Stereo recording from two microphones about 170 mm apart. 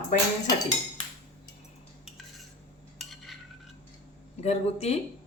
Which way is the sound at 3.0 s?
Centre (ahead or behind).